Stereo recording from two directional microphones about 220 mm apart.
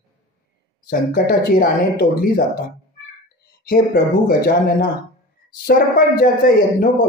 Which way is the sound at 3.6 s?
45° left (ahead or behind).